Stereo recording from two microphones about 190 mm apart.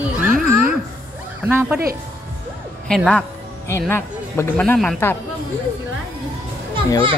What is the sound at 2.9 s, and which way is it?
A woman's voice, 5° left (ahead or behind).